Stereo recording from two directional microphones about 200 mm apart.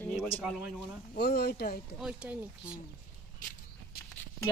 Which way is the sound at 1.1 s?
55° left (ahead or behind).